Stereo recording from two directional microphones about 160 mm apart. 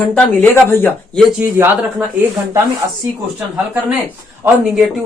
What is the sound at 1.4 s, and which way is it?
Speech, 15° right (ahead or behind).